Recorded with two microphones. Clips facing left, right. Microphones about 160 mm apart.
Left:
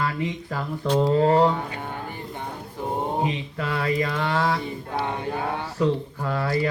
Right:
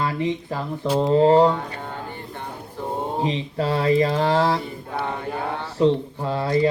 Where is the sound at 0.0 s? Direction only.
25° right (ahead or behind).